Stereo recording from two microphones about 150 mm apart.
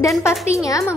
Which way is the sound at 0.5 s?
20° left (ahead or behind).